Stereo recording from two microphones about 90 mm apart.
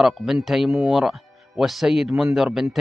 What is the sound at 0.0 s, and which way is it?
Speech, 5° right (ahead or behind).